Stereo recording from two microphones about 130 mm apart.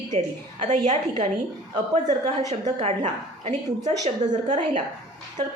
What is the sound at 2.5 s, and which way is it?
A woman's voice, 65° right (ahead or behind).